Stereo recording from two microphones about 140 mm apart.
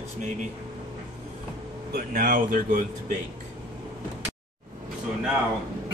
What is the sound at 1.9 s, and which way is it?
Speech, 90° right.